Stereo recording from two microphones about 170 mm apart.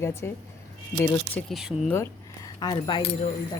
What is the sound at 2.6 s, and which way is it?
Speech, 25° left (ahead or behind).